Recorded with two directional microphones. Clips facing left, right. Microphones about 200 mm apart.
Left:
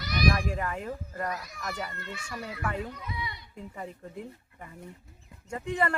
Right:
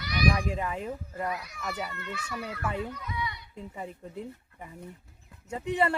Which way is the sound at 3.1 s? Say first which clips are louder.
Right 3 dB; 35° left (ahead or behind).